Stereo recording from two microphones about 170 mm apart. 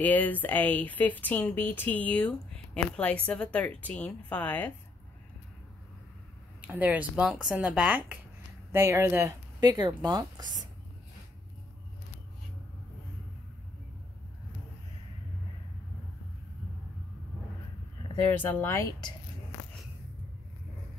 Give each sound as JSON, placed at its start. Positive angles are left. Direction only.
{"t": 0.0, "sound": "speech", "side_deg": 10}
{"t": 6.6, "sound": "speech", "side_deg": -10}
{"t": 18.3, "sound": "speech", "side_deg": 10}